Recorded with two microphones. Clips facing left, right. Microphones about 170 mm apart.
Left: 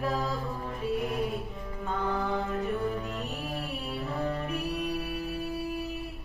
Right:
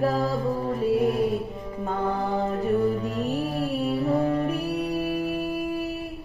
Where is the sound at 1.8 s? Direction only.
35° right (ahead or behind).